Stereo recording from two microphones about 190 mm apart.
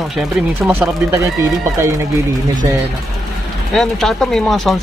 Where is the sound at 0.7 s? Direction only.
15° right (ahead or behind).